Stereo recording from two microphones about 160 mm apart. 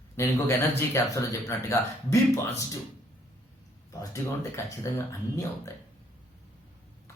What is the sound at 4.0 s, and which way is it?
Speech, 20° left (ahead or behind).